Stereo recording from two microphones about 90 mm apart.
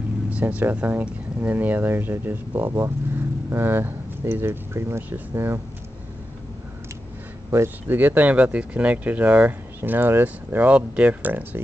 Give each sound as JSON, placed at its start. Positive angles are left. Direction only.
{"t": 0.3, "sound": "speech", "side_deg": -15}
{"t": 7.5, "sound": "speech", "side_deg": -25}